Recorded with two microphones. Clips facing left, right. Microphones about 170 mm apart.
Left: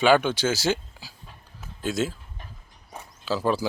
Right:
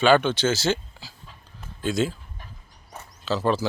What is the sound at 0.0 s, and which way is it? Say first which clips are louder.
Speech: right 1 dB; 10° left (ahead or behind).